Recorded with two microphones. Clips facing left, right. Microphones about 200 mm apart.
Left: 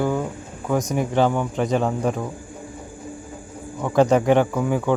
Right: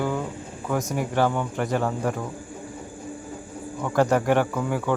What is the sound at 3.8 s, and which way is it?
Speech, 20° left (ahead or behind).